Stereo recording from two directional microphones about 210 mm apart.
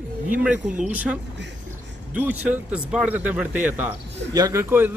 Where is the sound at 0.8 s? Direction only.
5° right (ahead or behind).